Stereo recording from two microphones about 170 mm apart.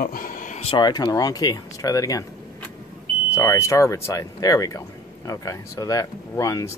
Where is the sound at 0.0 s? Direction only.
55° left (ahead or behind).